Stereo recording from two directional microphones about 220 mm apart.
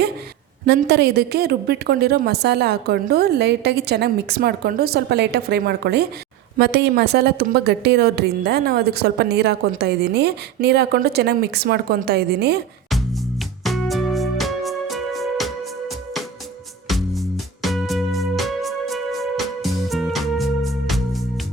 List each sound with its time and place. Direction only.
0.6 s a woman's voice: 45° right (ahead or behind)
13.7 s music: centre (ahead or behind)
16.9 s music: centre (ahead or behind)